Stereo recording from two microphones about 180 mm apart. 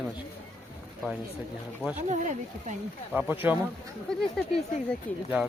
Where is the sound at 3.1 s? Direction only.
10° right (ahead or behind).